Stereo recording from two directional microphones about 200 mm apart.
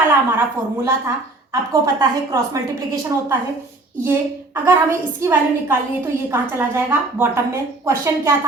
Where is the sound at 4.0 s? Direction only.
10° right (ahead or behind).